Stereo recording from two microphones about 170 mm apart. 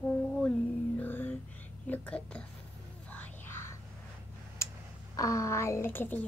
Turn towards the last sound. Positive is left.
turn(degrees=10)  # may be behind; listen again after turning